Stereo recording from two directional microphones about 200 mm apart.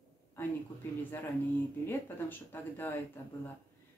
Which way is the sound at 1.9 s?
10° left (ahead or behind).